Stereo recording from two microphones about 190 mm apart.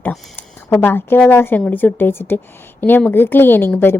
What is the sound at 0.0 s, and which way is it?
A woman's voice, 10° left (ahead or behind).